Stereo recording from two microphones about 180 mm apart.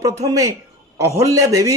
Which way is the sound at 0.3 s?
20° right (ahead or behind).